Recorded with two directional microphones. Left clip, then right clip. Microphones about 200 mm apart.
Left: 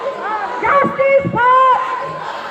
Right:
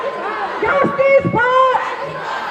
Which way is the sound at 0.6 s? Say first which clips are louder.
Left 1 dB; 15° right (ahead or behind).